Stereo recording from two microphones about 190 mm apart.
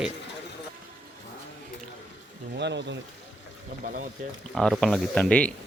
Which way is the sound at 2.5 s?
65° right (ahead or behind).